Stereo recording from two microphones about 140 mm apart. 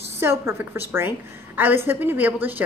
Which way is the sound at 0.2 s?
15° right (ahead or behind).